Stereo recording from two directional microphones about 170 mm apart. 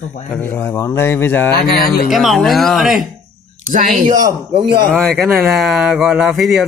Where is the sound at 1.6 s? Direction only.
60° left (ahead or behind).